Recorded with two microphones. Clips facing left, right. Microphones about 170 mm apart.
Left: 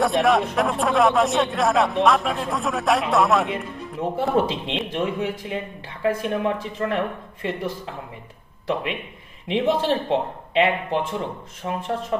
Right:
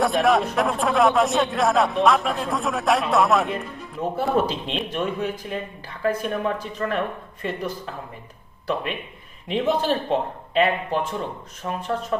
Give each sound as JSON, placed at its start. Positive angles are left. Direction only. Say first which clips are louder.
{"t": 0.0, "sound": "speech", "louder": "even", "side_deg": 0}
{"t": 4.0, "sound": "speech", "louder": "left 1 dB", "side_deg": 25}